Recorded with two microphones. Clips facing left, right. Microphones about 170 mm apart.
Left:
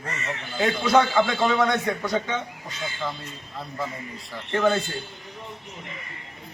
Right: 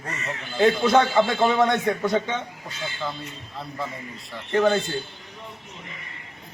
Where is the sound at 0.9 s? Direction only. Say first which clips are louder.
Right 1 dB; 25° right (ahead or behind).